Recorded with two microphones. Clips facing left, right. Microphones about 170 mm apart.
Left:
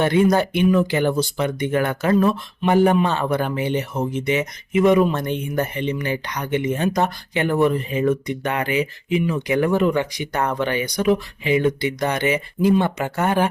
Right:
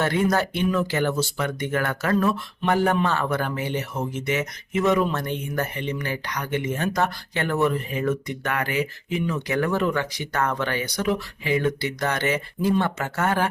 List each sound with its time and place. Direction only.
0.0 s speech: 20° left (ahead or behind)